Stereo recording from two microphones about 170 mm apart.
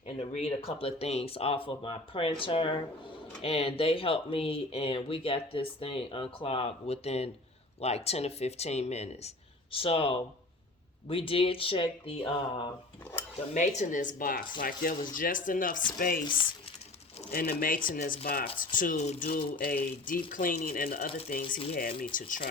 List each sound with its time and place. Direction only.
0.0 s speech: 40° left (ahead or behind)
13.5 s speech: 45° left (ahead or behind)
16.2 s speech: 30° left (ahead or behind)
17.3 s speech: 60° left (ahead or behind)
22.1 s speech: 50° left (ahead or behind)